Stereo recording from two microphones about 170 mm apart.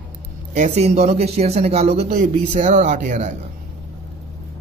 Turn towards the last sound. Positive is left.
turn(degrees=-45)  # may be behind; listen again after turning